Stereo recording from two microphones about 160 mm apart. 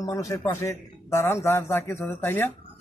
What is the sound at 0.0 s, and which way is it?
A man's voice, 20° left (ahead or behind).